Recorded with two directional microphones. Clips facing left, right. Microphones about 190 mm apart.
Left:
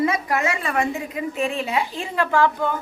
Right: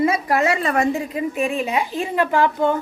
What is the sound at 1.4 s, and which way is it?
Speech, 15° right (ahead or behind).